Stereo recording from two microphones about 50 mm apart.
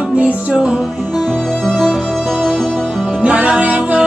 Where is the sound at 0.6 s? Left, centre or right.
Centre.